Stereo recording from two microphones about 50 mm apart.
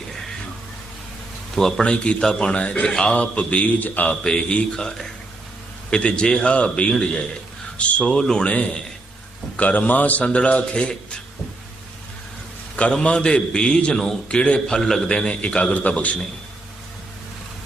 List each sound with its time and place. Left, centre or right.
0.1 s music: centre
1.5 s a man's voice: centre
1.8 s a man's voice: left
4.2 s a man's voice: centre
12.7 s a man's voice: left
15.7 s a man's voice: left